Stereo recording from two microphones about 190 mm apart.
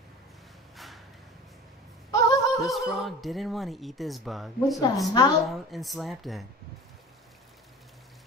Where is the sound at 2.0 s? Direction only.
15° left (ahead or behind).